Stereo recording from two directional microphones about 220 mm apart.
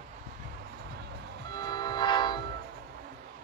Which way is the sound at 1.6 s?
20° left (ahead or behind).